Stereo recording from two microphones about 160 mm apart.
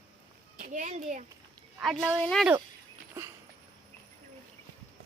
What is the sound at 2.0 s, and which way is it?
Speech, centre (ahead or behind).